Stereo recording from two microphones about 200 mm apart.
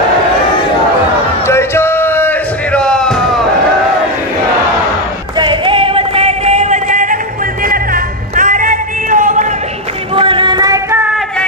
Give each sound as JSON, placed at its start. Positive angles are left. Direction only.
{"t": 1.5, "sound": "music", "side_deg": 15}
{"t": 5.4, "sound": "music", "side_deg": -25}
{"t": 10.1, "sound": "a sound", "side_deg": -25}